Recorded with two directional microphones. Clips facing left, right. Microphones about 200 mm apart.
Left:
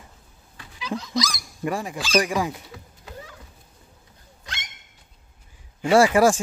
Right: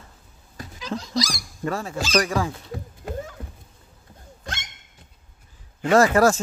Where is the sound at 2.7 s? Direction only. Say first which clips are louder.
Right 9 dB; 45° right (ahead or behind).